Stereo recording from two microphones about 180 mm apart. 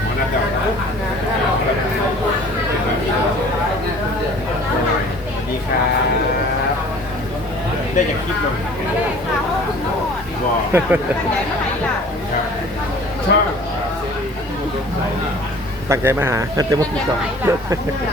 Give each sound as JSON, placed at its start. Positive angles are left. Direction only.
{"t": 8.0, "sound": "speech", "side_deg": 40}
{"t": 10.7, "sound": "speech", "side_deg": -15}
{"t": 13.3, "sound": "a sound", "side_deg": 65}
{"t": 15.9, "sound": "speech", "side_deg": -15}